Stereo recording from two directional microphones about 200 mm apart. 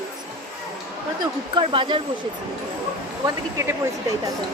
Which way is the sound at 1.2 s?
25° right (ahead or behind).